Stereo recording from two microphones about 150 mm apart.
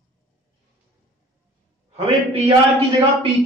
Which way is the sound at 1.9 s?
40° right (ahead or behind).